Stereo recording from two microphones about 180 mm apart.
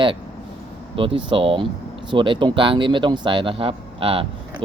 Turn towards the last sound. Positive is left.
turn(degrees=-30)  # may be behind; listen again after turning